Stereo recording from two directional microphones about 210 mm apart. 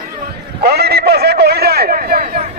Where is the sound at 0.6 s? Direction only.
50° right (ahead or behind).